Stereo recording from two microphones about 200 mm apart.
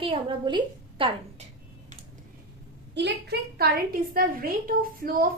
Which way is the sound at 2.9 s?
55° right (ahead or behind).